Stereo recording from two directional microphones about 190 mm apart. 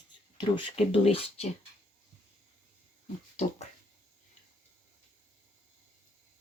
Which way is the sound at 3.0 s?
35° left (ahead or behind).